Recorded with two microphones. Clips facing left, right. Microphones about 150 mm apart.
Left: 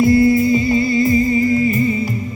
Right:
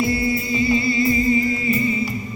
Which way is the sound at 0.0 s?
45° left (ahead or behind).